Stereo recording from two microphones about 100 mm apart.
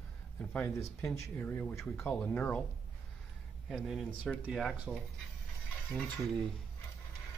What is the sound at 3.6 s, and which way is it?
Speech, centre (ahead or behind).